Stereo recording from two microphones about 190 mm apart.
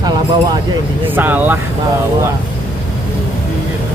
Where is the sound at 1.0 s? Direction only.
10° right (ahead or behind).